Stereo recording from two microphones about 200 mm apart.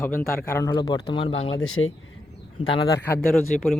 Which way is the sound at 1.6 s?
90° left.